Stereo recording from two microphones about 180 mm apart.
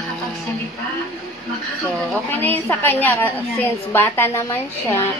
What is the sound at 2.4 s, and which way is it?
A woman's voice, 10° left (ahead or behind).